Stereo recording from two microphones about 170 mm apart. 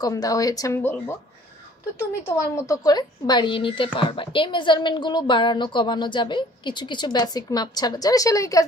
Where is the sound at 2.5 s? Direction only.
20° left (ahead or behind).